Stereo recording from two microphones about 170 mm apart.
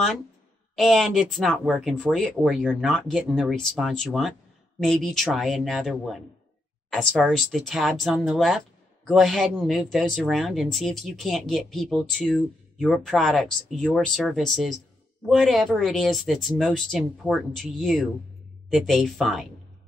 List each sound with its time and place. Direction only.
0.7 s speech: centre (ahead or behind)